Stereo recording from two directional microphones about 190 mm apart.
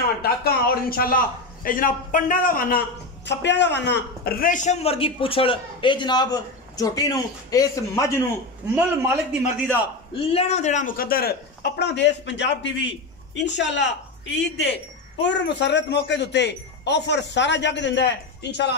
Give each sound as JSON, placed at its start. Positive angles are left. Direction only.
{"t": 0.2, "sound": "a man's voice", "side_deg": 55}
{"t": 3.3, "sound": "a man's voice", "side_deg": 65}
{"t": 8.7, "sound": "a man's voice", "side_deg": -10}
{"t": 10.3, "sound": "speech", "side_deg": 35}
{"t": 11.8, "sound": "speech", "side_deg": 65}